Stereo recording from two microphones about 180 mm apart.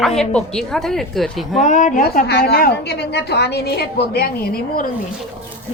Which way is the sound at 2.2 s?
65° left (ahead or behind).